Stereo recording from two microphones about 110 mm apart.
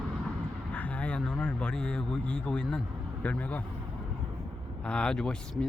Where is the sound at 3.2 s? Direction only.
15° left (ahead or behind).